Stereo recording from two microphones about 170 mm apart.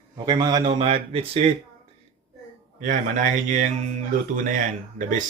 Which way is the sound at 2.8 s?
50° right (ahead or behind).